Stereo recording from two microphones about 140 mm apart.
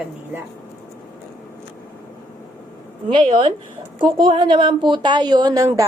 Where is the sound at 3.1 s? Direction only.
40° right (ahead or behind).